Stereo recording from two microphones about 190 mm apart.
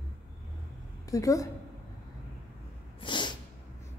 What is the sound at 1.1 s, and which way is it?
Speech, 15° left (ahead or behind).